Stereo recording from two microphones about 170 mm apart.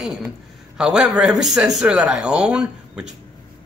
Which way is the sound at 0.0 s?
5° right (ahead or behind).